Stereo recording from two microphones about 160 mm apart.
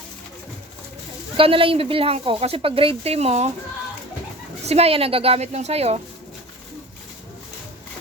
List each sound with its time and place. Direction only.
1.4 s speech: 35° right (ahead or behind)
4.6 s speech: 40° right (ahead or behind)